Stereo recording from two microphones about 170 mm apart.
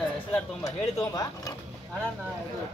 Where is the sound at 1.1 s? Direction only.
20° left (ahead or behind).